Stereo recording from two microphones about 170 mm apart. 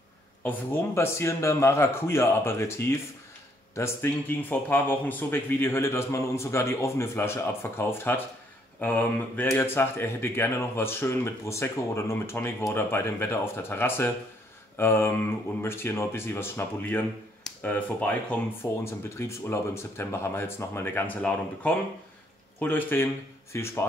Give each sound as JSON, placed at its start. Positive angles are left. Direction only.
{"t": 0.4, "sound": "speech", "side_deg": 10}